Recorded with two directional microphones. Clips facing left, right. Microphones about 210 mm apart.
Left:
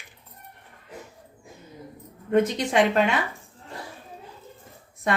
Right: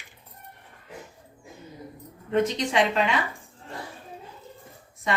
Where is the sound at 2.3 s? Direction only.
50° left (ahead or behind).